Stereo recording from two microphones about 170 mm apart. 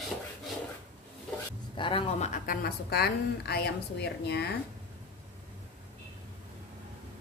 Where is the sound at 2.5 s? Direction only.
65° left (ahead or behind).